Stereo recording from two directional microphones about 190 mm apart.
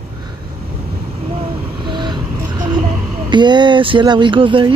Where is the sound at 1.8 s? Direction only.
25° right (ahead or behind).